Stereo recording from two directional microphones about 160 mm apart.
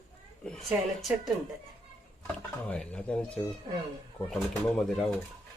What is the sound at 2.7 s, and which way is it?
Speech, 5° left (ahead or behind).